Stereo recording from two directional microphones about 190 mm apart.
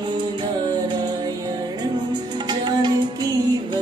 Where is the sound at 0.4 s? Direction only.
25° right (ahead or behind).